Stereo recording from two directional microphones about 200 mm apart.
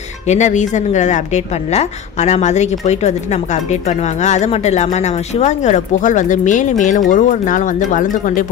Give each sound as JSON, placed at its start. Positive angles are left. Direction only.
{"t": 0.3, "sound": "a woman's voice", "side_deg": 35}